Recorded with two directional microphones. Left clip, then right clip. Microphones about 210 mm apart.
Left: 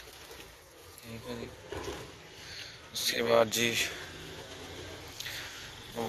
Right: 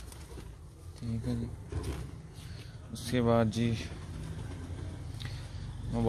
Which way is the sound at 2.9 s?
10° right (ahead or behind).